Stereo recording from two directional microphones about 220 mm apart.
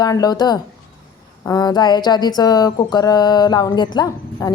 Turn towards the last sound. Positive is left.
turn(degrees=20)  # may be behind; listen again after turning